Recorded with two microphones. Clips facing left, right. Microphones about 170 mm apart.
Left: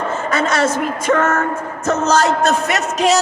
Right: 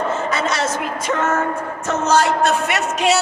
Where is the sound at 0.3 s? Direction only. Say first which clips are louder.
Left 4 dB; 50° left (ahead or behind).